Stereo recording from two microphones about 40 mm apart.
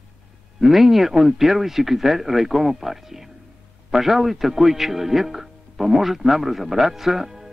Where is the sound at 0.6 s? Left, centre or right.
Centre.